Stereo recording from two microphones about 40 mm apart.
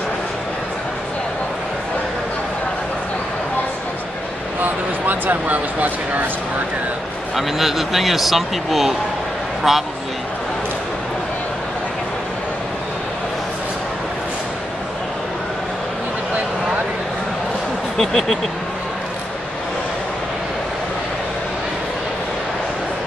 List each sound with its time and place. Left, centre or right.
4.6 s speech: right
7.3 s speech: centre
17.9 s speech: centre